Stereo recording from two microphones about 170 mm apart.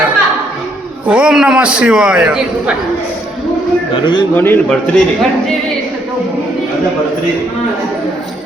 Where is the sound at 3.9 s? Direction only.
25° left (ahead or behind).